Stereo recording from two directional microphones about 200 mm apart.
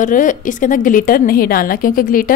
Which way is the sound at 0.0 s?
40° left (ahead or behind).